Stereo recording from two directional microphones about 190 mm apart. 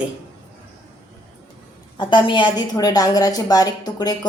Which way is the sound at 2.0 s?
25° left (ahead or behind).